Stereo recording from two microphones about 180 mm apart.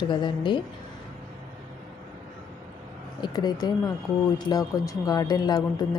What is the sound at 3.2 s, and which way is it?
Speech, 25° left (ahead or behind).